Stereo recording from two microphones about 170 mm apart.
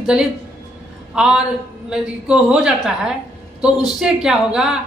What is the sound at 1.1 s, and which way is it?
A man's voice, 5° right (ahead or behind).